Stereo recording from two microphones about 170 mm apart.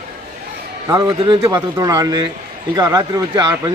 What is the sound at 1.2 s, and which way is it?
A man's voice, 30° right (ahead or behind).